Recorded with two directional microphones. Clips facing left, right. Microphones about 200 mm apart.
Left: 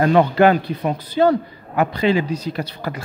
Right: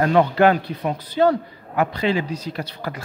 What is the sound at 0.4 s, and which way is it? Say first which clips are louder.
Speech: left 2 dB; 15° left (ahead or behind).